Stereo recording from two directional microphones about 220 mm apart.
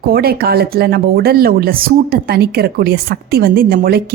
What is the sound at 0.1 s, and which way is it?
Speech, 45° right (ahead or behind).